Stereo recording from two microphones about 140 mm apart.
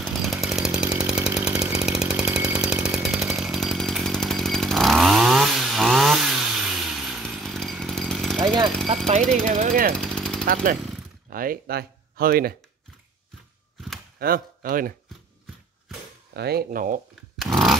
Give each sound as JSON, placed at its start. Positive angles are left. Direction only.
{"t": 0.0, "sound": "chainsaw", "side_deg": 0}
{"t": 8.9, "sound": "speech", "side_deg": -50}
{"t": 9.2, "sound": "speech", "side_deg": 5}
{"t": 9.5, "sound": "speech", "side_deg": -65}
{"t": 9.9, "sound": "jackhammer", "side_deg": 5}
{"t": 10.4, "sound": "speech", "side_deg": -90}
{"t": 14.2, "sound": "speech", "side_deg": -90}
{"t": 16.5, "sound": "speech", "side_deg": -75}
{"t": 17.4, "sound": "chainsaw", "side_deg": 0}